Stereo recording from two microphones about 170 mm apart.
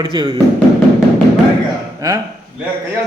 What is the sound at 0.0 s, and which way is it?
Speech, 30° right (ahead or behind).